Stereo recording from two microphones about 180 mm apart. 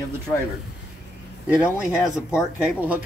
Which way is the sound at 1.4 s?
5° right (ahead or behind).